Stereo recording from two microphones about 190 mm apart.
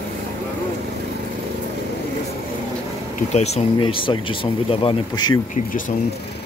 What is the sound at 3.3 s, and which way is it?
Speech, 35° left (ahead or behind).